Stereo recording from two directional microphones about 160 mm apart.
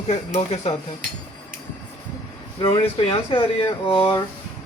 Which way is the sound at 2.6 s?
35° left (ahead or behind).